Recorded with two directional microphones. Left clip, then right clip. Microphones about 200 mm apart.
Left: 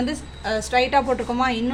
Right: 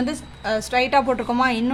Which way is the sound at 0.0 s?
15° right (ahead or behind).